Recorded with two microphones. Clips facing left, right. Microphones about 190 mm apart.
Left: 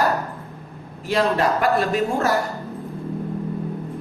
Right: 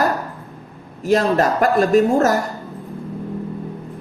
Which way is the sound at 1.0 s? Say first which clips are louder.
Right 4 dB; 45° right (ahead or behind).